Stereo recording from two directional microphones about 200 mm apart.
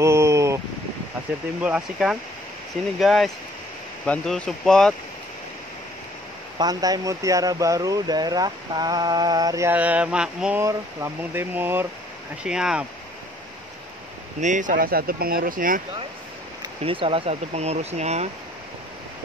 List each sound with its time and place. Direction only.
0.0 s a sound: 15° right (ahead or behind)
1.6 s speech: 5° right (ahead or behind)
6.6 s speech: 20° right (ahead or behind); by 12.8 s 5° right (ahead or behind)
14.4 s speech: 40° right (ahead or behind)
16.6 s speech: 25° right (ahead or behind)